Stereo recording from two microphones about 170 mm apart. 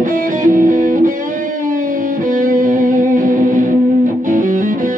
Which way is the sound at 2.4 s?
50° right (ahead or behind).